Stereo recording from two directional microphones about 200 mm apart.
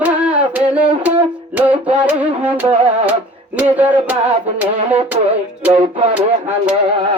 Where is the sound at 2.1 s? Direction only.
10° right (ahead or behind).